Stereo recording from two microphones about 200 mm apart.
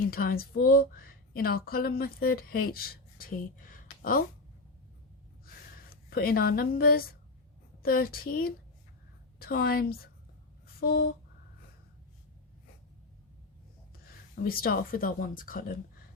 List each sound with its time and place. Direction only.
0.0 s a woman's voice: 45° left (ahead or behind)
5.7 s a woman's voice: 50° left (ahead or behind)
10.8 s a sound: 50° left (ahead or behind)
14.1 s a woman's voice: 50° left (ahead or behind)